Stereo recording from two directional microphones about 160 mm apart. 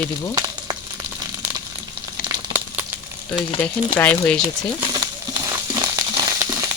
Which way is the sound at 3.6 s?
10° left (ahead or behind).